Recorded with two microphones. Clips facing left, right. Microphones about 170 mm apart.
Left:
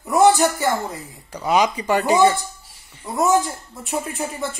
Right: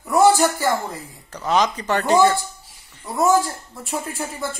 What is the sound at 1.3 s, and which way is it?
Speech, 10° left (ahead or behind).